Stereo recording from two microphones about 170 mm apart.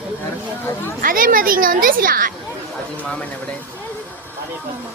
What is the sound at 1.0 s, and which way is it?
Speech, 55° right (ahead or behind).